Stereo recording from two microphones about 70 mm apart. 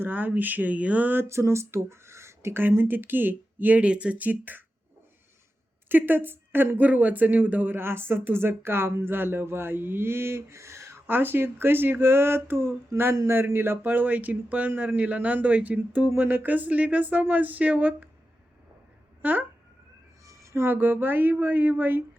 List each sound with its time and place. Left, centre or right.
0.0 s speech: right
1.3 s speech: right
5.9 s speech: right
11.0 s speech: right
19.2 s speech: right
20.2 s speech: right